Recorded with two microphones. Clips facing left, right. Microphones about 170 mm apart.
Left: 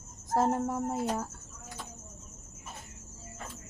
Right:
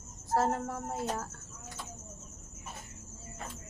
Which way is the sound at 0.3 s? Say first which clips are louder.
Left 3 dB; 15° left (ahead or behind).